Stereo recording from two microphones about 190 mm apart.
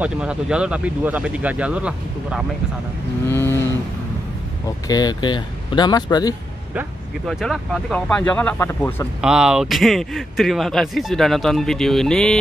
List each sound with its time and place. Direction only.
0.0 s speech: 5° right (ahead or behind)
3.3 s cattle: 10° left (ahead or behind)
4.6 s speech: 20° left (ahead or behind)
7.2 s speech: centre (ahead or behind)
9.2 s speech: 5° right (ahead or behind)